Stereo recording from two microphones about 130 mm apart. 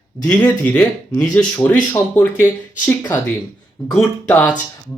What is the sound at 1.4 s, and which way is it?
Speech, 10° left (ahead or behind).